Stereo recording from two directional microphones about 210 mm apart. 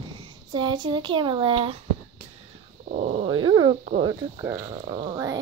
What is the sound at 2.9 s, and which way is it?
Dog, 35° right (ahead or behind).